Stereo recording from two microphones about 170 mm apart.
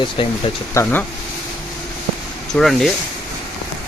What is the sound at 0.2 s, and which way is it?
Speech, 30° left (ahead or behind).